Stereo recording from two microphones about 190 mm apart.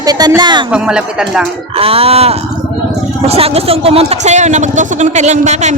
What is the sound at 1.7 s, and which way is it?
Speech, 30° right (ahead or behind).